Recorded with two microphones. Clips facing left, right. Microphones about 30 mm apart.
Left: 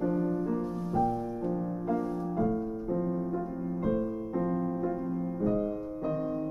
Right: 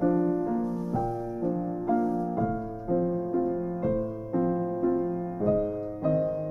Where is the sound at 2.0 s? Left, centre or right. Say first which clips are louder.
Right 5 dB; left.